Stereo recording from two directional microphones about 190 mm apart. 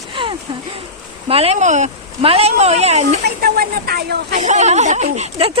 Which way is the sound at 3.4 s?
55° right (ahead or behind).